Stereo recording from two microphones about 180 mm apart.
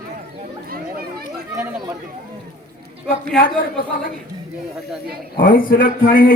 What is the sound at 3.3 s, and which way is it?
Speech, 50° left (ahead or behind).